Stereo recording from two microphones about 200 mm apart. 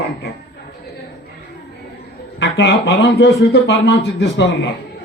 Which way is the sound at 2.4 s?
60° left (ahead or behind).